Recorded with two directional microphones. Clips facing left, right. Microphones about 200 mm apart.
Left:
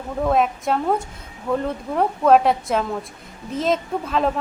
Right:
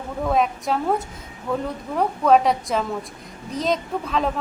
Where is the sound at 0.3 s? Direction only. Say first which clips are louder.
Left 1 dB; centre (ahead or behind).